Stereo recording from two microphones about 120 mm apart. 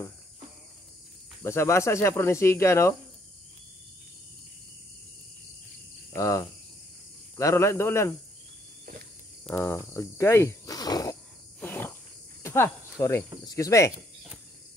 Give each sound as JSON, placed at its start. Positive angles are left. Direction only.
{"t": 1.4, "sound": "speech", "side_deg": 20}
{"t": 6.1, "sound": "speech", "side_deg": 25}
{"t": 9.7, "sound": "speech", "side_deg": 25}
{"t": 11.6, "sound": "cricket", "side_deg": 15}
{"t": 13.5, "sound": "speech", "side_deg": 25}
{"t": 13.9, "sound": "cricket", "side_deg": -5}